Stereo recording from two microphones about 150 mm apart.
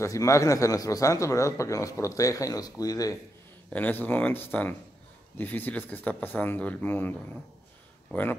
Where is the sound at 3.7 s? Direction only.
10° left (ahead or behind).